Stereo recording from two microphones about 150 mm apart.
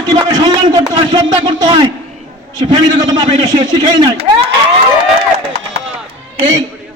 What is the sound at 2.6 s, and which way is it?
A man's voice, 30° right (ahead or behind).